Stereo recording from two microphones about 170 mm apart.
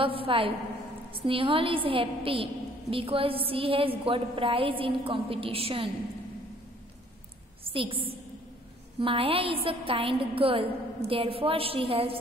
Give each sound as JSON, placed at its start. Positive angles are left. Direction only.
{"t": 0.0, "sound": "a woman's voice", "side_deg": -30}
{"t": 7.7, "sound": "a woman's voice", "side_deg": -30}